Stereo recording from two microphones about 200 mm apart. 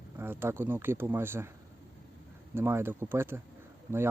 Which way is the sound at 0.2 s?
10° right (ahead or behind).